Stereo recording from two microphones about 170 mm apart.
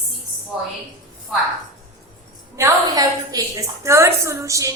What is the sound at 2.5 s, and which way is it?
A woman's voice, 20° right (ahead or behind).